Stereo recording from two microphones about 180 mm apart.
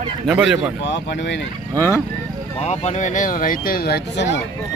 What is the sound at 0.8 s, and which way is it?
Speech, 80° left.